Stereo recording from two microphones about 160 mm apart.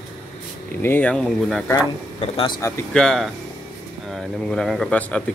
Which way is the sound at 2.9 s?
5° left (ahead or behind).